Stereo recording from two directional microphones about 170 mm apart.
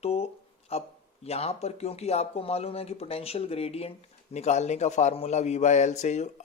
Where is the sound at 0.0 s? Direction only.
35° left (ahead or behind).